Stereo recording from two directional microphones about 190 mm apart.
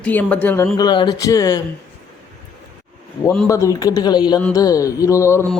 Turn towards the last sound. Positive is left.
turn(degrees=15)  # may be behind; listen again after turning